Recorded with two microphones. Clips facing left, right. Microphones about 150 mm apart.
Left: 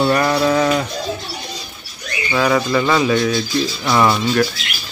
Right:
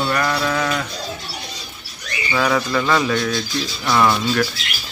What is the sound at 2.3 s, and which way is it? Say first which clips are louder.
Speech: left 3 dB; 5° left (ahead or behind).